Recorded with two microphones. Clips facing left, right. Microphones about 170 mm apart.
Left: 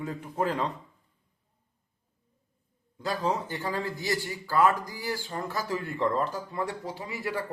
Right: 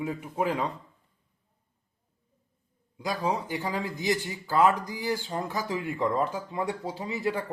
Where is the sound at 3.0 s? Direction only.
15° right (ahead or behind).